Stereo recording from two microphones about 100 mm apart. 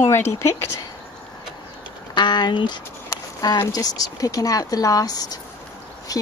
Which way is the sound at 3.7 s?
40° left (ahead or behind).